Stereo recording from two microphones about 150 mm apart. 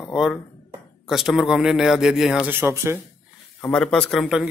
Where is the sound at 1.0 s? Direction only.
Centre (ahead or behind).